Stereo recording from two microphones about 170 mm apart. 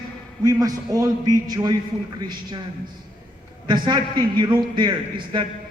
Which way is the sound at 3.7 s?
25° right (ahead or behind).